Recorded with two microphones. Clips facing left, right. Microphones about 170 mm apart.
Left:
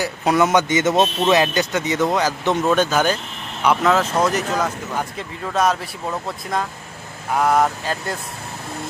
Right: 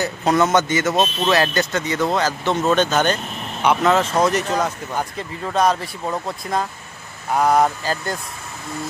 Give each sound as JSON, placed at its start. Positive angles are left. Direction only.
{"t": 0.0, "sound": "speech", "side_deg": 10}
{"t": 7.3, "sound": "speech", "side_deg": 0}